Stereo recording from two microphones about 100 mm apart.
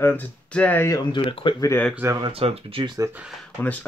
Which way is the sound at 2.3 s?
75° right (ahead or behind).